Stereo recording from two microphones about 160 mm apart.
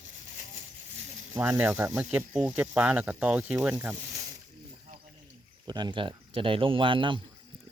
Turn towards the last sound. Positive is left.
turn(degrees=-30)  # may be behind; listen again after turning